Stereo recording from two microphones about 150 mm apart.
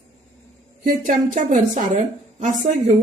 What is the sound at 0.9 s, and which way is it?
A woman's voice, 60° right (ahead or behind).